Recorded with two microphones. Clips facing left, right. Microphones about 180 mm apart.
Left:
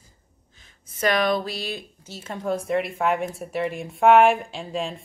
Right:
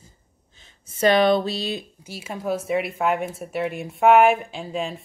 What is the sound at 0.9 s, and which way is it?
Speech, 25° right (ahead or behind).